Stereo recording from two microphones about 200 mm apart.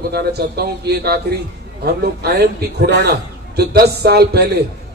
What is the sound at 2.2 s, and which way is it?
A man's voice, 55° right (ahead or behind).